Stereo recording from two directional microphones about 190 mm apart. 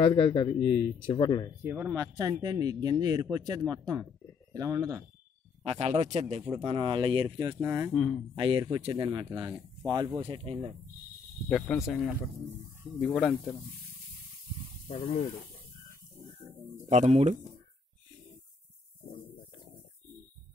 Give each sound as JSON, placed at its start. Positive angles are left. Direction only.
{"t": 0.0, "sound": "speech", "side_deg": 30}
{"t": 1.6, "sound": "speech", "side_deg": -10}
{"t": 5.6, "sound": "speech", "side_deg": -30}
{"t": 7.9, "sound": "speech", "side_deg": 5}
{"t": 8.4, "sound": "speech", "side_deg": -25}
{"t": 9.3, "sound": "speech", "side_deg": -15}
{"t": 10.4, "sound": "speech", "side_deg": -30}
{"t": 11.4, "sound": "speech", "side_deg": 0}
{"t": 16.9, "sound": "speech", "side_deg": -40}